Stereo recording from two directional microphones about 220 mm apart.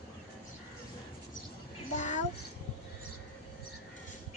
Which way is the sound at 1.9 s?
35° left (ahead or behind).